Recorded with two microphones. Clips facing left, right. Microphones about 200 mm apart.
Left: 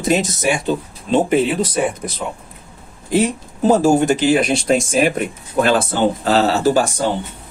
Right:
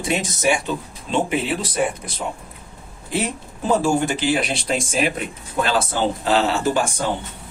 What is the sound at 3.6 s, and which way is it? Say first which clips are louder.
Speech: left 6 dB; 40° left (ahead or behind).